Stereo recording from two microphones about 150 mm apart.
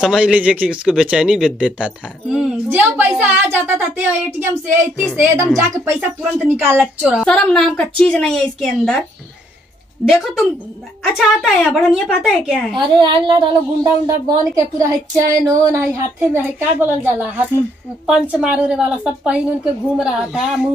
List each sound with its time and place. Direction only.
0.0 s speech: 5° right (ahead or behind)
7.2 s a woman's voice: 5° left (ahead or behind)
10.0 s a woman's voice: centre (ahead or behind)
12.7 s a woman's voice: 30° right (ahead or behind); by 20.7 s centre (ahead or behind)